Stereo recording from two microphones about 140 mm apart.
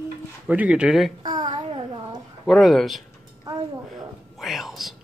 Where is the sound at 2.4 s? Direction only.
Centre (ahead or behind).